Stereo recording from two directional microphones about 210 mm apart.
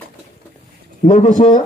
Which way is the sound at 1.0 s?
35° left (ahead or behind).